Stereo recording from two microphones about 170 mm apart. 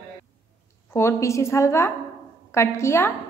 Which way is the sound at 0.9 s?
15° left (ahead or behind).